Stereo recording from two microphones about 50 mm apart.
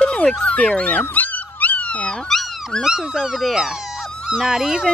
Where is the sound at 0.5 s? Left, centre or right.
Left.